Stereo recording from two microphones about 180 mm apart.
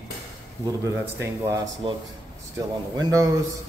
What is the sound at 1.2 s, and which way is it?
A man's voice, 15° right (ahead or behind).